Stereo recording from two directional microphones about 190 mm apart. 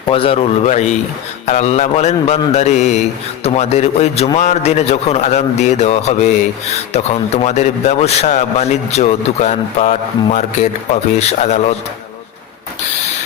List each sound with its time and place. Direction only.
0.1 s a man's voice: 30° left (ahead or behind)